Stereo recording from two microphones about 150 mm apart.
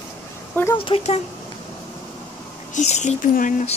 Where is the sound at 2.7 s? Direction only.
50° left (ahead or behind).